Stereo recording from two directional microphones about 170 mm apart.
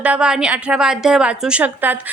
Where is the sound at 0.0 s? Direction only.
5° right (ahead or behind).